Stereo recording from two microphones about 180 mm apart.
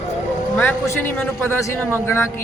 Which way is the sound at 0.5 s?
10° left (ahead or behind).